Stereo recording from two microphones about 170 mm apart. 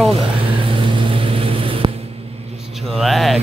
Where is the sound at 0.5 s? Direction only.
30° right (ahead or behind).